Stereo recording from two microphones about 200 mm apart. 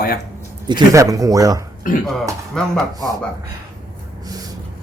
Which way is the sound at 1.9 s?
40° left (ahead or behind).